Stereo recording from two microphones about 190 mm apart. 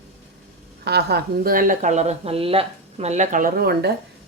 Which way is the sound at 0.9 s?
60° right (ahead or behind).